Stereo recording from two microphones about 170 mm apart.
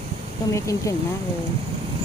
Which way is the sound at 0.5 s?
20° left (ahead or behind).